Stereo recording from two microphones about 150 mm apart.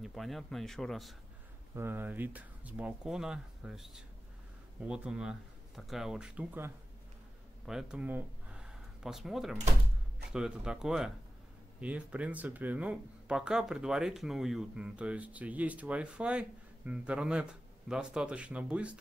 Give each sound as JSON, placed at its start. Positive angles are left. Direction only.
{"t": 0.0, "sound": "speech", "side_deg": 0}
{"t": 1.8, "sound": "speech", "side_deg": -15}